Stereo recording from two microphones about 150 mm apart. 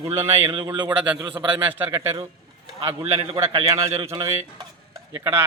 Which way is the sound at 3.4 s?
20° right (ahead or behind).